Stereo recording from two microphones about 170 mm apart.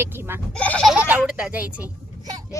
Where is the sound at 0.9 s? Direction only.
10° right (ahead or behind).